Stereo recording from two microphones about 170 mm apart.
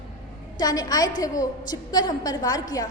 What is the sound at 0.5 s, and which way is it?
A woman's voice, 25° left (ahead or behind).